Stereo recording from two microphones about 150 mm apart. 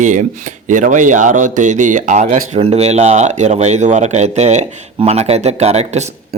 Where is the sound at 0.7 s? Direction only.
55° right (ahead or behind).